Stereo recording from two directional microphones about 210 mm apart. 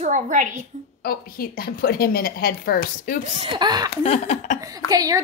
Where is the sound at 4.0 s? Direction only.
30° left (ahead or behind).